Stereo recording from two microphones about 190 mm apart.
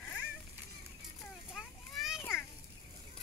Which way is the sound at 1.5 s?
Centre (ahead or behind).